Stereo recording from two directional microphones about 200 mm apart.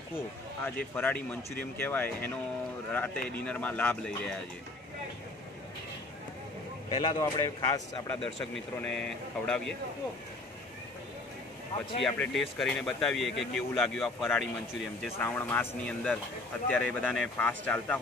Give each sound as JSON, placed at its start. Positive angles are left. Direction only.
{"t": 0.7, "sound": "speech", "side_deg": 10}
{"t": 6.9, "sound": "speech", "side_deg": 25}
{"t": 7.2, "sound": "speech", "side_deg": 15}
{"t": 8.7, "sound": "speech", "side_deg": 5}
{"t": 12.0, "sound": "speech", "side_deg": 0}
{"t": 15.1, "sound": "speech", "side_deg": 10}